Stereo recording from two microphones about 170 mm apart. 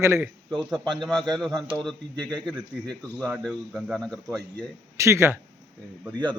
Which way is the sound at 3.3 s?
Centre (ahead or behind).